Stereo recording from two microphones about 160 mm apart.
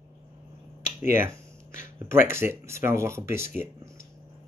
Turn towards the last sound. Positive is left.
turn(degrees=-15)  # may be behind; listen again after turning